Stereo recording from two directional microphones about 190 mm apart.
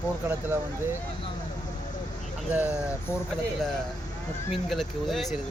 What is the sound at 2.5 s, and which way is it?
Speech, 10° right (ahead or behind).